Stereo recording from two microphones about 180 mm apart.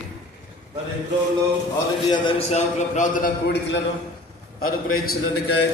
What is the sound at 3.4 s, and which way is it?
Speech, 70° left (ahead or behind).